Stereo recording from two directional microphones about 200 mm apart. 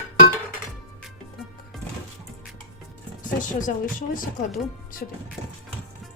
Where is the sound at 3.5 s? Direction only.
40° left (ahead or behind).